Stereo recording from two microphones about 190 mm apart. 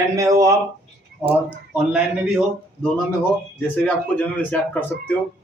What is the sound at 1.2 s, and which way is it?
Speech, 5° right (ahead or behind).